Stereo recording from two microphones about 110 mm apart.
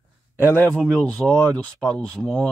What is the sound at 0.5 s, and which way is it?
Speech, 20° left (ahead or behind).